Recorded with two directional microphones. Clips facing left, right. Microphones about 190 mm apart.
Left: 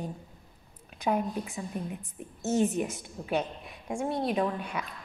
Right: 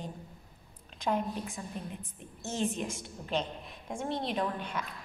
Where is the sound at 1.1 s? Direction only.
10° left (ahead or behind).